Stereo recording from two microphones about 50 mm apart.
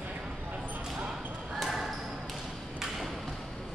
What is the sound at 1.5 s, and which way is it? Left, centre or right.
Basketball bounce, centre.